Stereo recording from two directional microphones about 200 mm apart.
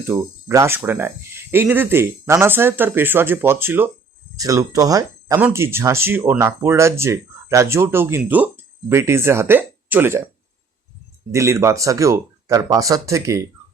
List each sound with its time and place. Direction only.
0.1 s speech: 15° right (ahead or behind)
11.3 s speech: 15° right (ahead or behind)